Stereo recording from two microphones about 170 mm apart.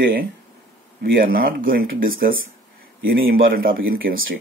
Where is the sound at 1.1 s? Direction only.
60° right (ahead or behind).